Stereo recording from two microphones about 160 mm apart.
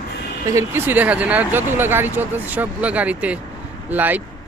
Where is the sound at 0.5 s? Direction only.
15° right (ahead or behind).